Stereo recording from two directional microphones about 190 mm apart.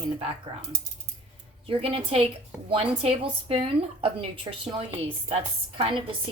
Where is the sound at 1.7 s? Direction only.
30° right (ahead or behind).